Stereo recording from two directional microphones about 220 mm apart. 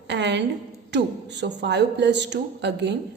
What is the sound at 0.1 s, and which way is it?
A woman's voice, 50° right (ahead or behind).